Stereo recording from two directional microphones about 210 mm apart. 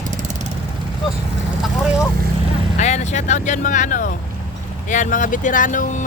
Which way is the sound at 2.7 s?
35° left (ahead or behind).